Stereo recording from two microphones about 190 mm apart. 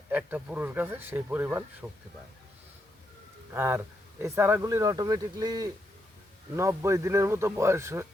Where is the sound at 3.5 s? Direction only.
10° right (ahead or behind).